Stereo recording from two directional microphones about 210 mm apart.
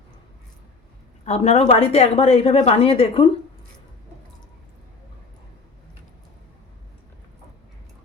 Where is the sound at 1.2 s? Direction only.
30° left (ahead or behind).